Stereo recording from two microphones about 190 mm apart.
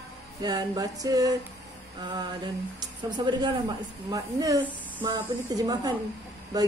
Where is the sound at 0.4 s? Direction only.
20° right (ahead or behind).